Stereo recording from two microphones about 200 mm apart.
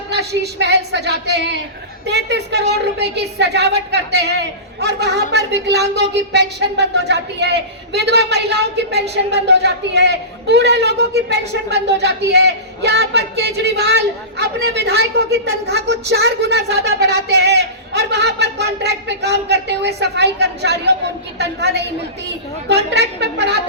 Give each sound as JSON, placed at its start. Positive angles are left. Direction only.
{"t": 0.1, "sound": "a man's voice", "side_deg": -55}